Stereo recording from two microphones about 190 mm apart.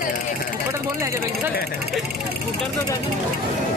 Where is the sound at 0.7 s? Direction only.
15° right (ahead or behind).